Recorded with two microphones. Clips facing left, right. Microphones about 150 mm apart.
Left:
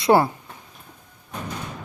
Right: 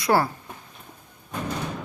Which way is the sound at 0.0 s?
20° left (ahead or behind).